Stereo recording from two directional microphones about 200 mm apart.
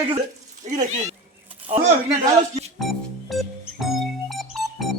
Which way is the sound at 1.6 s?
25° right (ahead or behind).